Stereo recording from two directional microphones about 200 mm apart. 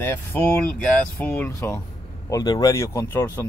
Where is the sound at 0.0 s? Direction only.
10° left (ahead or behind).